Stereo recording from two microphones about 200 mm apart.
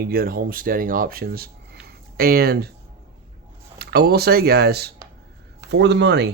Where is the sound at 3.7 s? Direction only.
50° right (ahead or behind).